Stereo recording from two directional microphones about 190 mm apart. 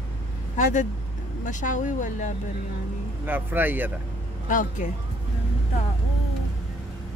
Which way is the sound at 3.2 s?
10° right (ahead or behind).